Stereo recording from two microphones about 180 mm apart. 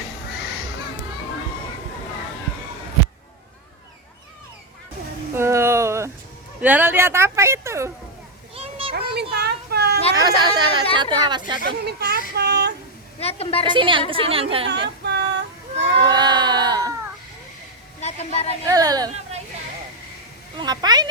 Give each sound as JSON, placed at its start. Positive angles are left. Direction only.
{"t": 5.4, "sound": "a sound", "side_deg": -15}
{"t": 6.6, "sound": "speech", "side_deg": -10}
{"t": 8.5, "sound": "children playing", "side_deg": -30}
{"t": 9.0, "sound": "a sound", "side_deg": -65}
{"t": 10.2, "sound": "speech", "side_deg": -20}
{"t": 11.6, "sound": "speech", "side_deg": -65}
{"t": 13.1, "sound": "a woman's voice", "side_deg": 35}
{"t": 13.7, "sound": "a woman's voice", "side_deg": -25}
{"t": 14.7, "sound": "child singing", "side_deg": -70}
{"t": 16.0, "sound": "a sound", "side_deg": -25}
{"t": 18.0, "sound": "a woman's voice", "side_deg": 35}
{"t": 18.6, "sound": "speech", "side_deg": -20}
{"t": 20.6, "sound": "speech", "side_deg": -20}